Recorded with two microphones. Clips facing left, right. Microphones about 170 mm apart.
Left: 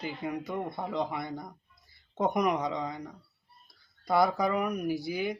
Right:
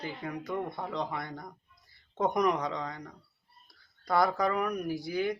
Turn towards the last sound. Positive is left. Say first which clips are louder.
# even
turn(degrees=10)  # may be behind; listen again after turning